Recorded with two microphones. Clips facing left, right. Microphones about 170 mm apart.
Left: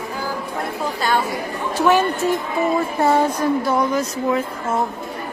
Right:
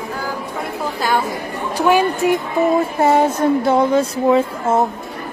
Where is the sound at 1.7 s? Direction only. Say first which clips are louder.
Right 2 dB; 15° right (ahead or behind).